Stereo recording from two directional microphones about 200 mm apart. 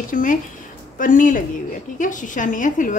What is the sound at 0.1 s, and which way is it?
A woman's voice, 40° left (ahead or behind).